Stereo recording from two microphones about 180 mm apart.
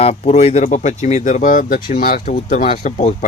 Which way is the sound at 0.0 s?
35° left (ahead or behind).